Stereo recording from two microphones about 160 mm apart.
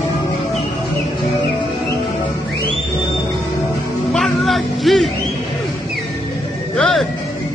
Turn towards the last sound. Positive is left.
turn(degrees=0)  # may be behind; listen again after turning